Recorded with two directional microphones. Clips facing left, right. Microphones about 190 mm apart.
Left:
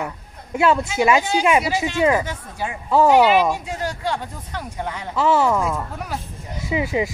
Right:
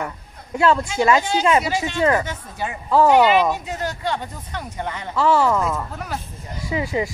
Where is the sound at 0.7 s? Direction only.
10° left (ahead or behind).